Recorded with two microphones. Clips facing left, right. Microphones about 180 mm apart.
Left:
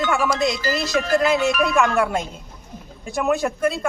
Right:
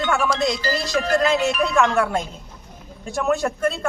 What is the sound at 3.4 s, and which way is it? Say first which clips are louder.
Speech: left 1 dB; 5° left (ahead or behind).